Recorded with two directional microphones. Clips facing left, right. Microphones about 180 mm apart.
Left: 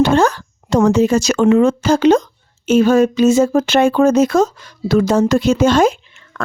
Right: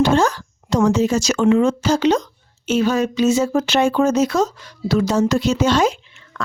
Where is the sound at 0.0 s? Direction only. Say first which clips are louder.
Left 3 dB; 60° left (ahead or behind).